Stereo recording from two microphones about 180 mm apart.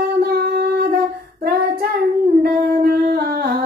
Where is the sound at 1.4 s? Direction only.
60° right (ahead or behind).